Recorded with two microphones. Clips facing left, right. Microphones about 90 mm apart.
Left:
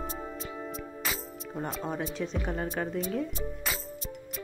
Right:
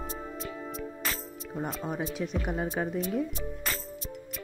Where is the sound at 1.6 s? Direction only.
Centre (ahead or behind).